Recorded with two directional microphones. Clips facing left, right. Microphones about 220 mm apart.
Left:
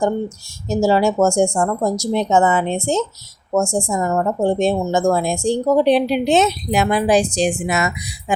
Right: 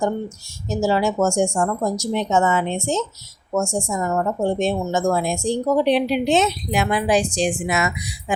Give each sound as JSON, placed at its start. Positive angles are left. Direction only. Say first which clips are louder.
{"t": 0.7, "sound": "a woman's voice", "louder": "left 4 dB", "side_deg": 30}